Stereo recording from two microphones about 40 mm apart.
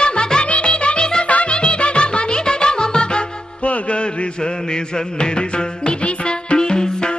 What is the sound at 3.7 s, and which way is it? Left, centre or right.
Mantra, left.